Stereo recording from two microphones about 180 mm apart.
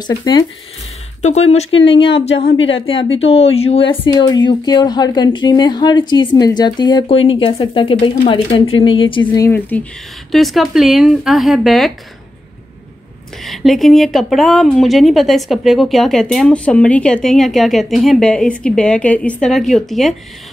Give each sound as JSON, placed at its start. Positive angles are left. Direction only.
{"t": 0.0, "sound": "speech", "side_deg": 20}
{"t": 1.2, "sound": "a woman's voice", "side_deg": 35}
{"t": 4.0, "sound": "speech", "side_deg": 25}
{"t": 9.7, "sound": "speech", "side_deg": 10}
{"t": 13.4, "sound": "speech", "side_deg": 0}